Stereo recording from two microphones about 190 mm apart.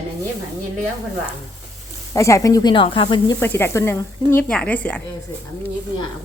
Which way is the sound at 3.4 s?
10° left (ahead or behind).